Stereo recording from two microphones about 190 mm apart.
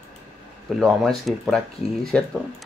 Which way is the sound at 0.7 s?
Centre (ahead or behind).